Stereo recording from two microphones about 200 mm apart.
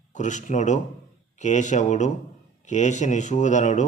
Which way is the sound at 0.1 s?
35° left (ahead or behind).